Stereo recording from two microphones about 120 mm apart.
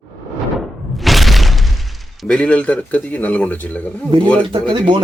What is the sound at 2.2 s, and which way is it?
Speech, 10° left (ahead or behind).